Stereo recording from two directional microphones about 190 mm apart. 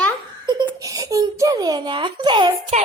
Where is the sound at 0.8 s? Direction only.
20° right (ahead or behind).